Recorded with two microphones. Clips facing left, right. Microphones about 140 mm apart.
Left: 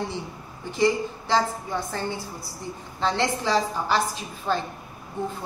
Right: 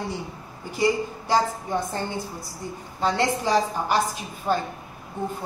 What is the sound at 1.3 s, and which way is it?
A woman's voice, 20° right (ahead or behind).